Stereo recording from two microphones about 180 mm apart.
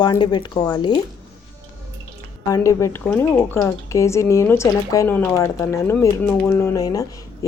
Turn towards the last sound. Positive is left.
turn(degrees=20)  # may be behind; listen again after turning